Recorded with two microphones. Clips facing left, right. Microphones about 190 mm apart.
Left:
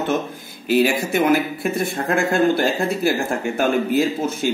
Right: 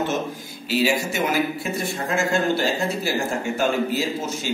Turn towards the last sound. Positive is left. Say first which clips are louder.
# left 6 dB
turn(degrees=55)  # may be behind; listen again after turning